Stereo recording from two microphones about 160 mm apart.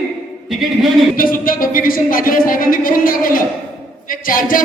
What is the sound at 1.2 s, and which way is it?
Speech, 60° left (ahead or behind).